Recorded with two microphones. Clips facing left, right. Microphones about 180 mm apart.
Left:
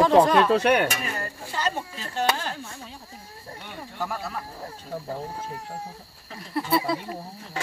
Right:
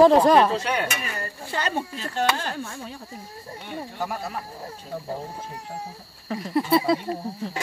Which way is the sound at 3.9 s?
15° right (ahead or behind).